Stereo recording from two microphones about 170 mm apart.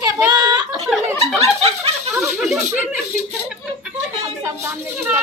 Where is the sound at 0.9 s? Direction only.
Centre (ahead or behind).